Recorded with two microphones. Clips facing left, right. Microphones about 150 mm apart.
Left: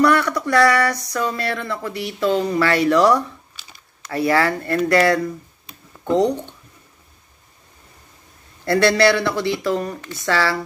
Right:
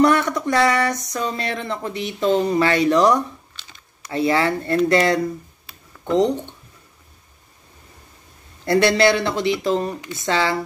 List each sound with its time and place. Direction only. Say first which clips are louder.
0.0 s speech: even; 20° right (ahead or behind)
8.6 s speech: even; 20° right (ahead or behind)